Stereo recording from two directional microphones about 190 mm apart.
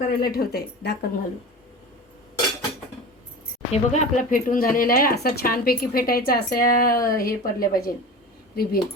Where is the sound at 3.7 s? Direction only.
40° left (ahead or behind).